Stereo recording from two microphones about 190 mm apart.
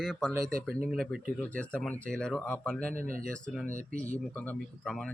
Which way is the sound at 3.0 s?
45° right (ahead or behind).